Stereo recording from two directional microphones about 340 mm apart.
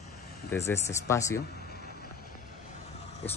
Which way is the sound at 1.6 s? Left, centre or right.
Left.